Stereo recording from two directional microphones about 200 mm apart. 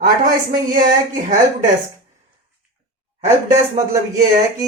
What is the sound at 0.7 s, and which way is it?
Speech, 45° right (ahead or behind).